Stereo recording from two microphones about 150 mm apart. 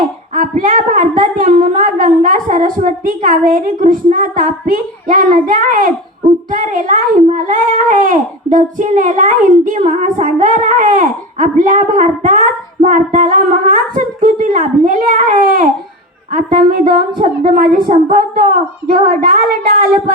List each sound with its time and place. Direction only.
0.3 s a child's voice: 65° right (ahead or behind)